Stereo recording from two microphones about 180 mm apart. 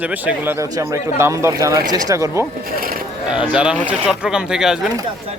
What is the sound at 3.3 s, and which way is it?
A man's voice, 5° right (ahead or behind).